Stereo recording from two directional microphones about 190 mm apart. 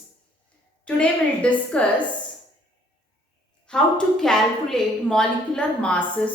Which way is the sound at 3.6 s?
5° left (ahead or behind).